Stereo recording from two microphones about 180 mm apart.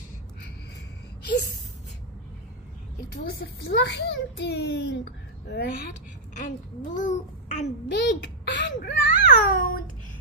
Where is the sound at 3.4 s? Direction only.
75° left (ahead or behind).